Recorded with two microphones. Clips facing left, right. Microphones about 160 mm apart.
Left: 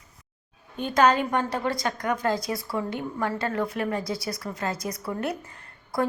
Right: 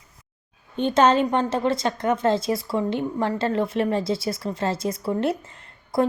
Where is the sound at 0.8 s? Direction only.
25° right (ahead or behind).